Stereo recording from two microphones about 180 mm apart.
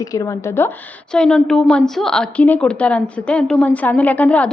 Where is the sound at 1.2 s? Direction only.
5° left (ahead or behind).